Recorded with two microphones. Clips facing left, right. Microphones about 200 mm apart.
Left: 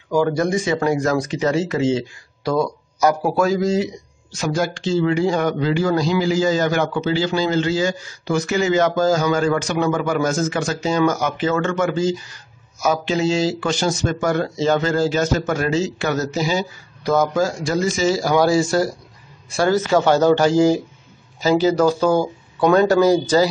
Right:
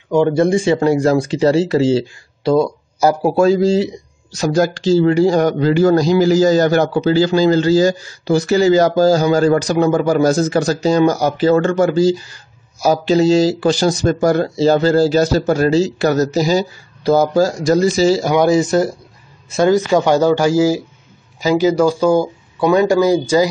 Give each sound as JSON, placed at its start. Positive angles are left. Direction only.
{"t": 0.1, "sound": "speech", "side_deg": -25}
{"t": 18.2, "sound": "speech", "side_deg": -20}